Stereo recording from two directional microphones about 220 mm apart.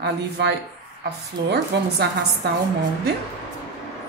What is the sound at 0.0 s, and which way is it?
A woman's voice, 50° right (ahead or behind).